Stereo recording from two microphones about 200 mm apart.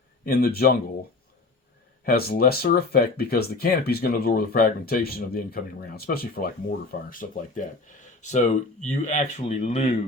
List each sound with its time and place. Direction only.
0.3 s speech: 50° left (ahead or behind)
2.0 s speech: 50° left (ahead or behind)